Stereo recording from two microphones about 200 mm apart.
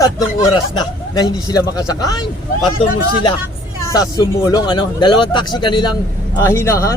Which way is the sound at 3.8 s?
15° left (ahead or behind).